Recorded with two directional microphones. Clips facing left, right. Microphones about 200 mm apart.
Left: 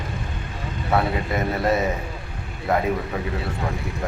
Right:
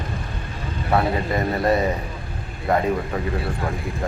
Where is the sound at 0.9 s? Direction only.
Centre (ahead or behind).